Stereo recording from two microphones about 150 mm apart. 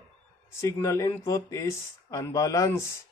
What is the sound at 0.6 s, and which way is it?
Speech, 20° left (ahead or behind).